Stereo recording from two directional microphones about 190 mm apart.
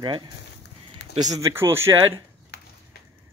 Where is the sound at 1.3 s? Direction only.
15° right (ahead or behind).